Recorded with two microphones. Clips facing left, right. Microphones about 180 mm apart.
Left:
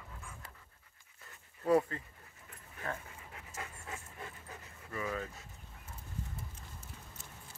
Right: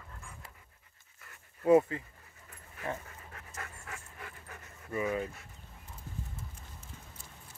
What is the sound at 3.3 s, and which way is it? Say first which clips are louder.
Pant: even; 20° left (ahead or behind).